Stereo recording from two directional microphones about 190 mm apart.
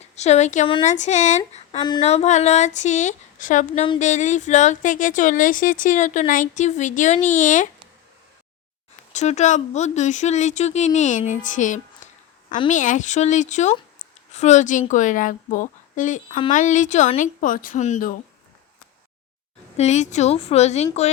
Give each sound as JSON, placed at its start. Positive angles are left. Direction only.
{"t": 0.2, "sound": "speech", "side_deg": 35}
{"t": 9.1, "sound": "speech", "side_deg": 35}
{"t": 19.7, "sound": "speech", "side_deg": 35}